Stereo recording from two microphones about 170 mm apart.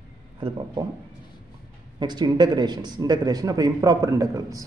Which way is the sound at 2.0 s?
25° right (ahead or behind).